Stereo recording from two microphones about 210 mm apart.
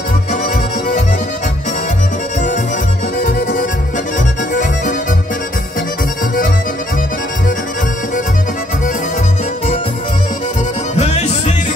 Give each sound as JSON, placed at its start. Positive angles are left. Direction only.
{"t": 3.2, "sound": "accordion", "side_deg": 45}
{"t": 11.0, "sound": "music", "side_deg": 30}